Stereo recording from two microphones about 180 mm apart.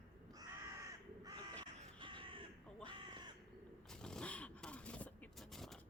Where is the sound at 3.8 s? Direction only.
5° left (ahead or behind).